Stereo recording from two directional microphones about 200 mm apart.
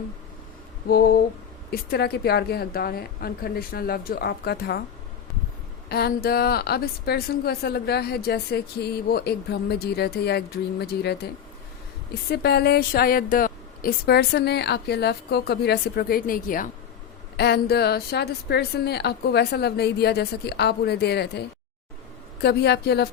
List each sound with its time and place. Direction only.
1.7 s a woman's voice: 50° left (ahead or behind)
5.9 s a woman's voice: 50° left (ahead or behind)
12.3 s a woman's voice: 55° left (ahead or behind)